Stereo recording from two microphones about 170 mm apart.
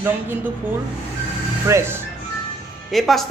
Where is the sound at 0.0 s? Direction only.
10° right (ahead or behind).